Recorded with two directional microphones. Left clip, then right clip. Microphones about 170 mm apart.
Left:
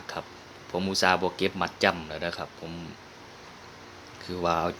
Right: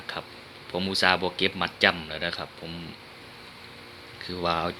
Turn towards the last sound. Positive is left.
turn(degrees=15)  # may be behind; listen again after turning